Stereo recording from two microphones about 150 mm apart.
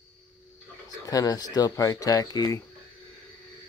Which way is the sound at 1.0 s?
25° left (ahead or behind).